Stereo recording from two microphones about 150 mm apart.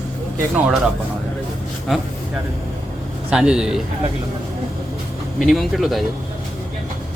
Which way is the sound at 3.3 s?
5° right (ahead or behind).